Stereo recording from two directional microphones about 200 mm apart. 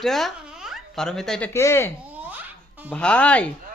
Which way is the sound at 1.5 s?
15° left (ahead or behind).